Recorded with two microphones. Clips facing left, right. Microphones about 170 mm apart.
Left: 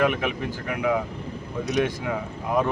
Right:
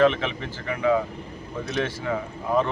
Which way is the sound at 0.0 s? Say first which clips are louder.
Right 2 dB; 10° left (ahead or behind).